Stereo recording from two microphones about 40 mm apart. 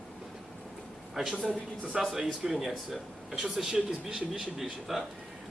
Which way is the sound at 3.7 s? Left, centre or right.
Right.